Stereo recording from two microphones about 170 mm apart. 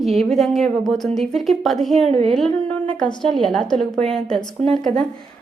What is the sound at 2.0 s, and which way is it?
Speech, 40° right (ahead or behind).